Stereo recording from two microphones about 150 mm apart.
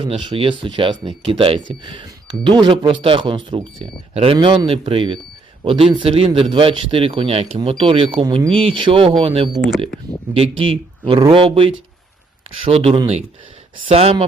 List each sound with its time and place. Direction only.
0.0 s speech: 35° right (ahead or behind)
9.5 s speech: 5° right (ahead or behind)
10.3 s speech: 40° right (ahead or behind)